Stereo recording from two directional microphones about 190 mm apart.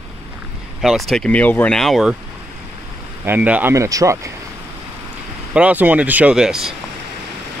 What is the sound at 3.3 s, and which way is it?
Speech, 5° right (ahead or behind).